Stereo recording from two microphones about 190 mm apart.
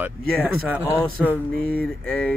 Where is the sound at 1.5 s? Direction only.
5° left (ahead or behind).